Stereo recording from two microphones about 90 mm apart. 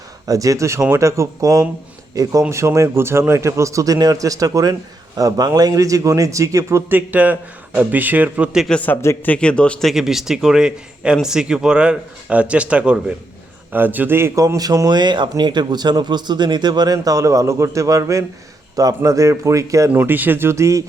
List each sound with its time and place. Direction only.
0.3 s a man's voice: 40° right (ahead or behind)
6.9 s speech: 20° right (ahead or behind)
8.7 s a man's voice: 15° left (ahead or behind)
9.9 s speech: 5° right (ahead or behind); by 14.4 s 25° right (ahead or behind)
14.4 s a man's voice: 45° right (ahead or behind)
19.9 s speech: 20° right (ahead or behind)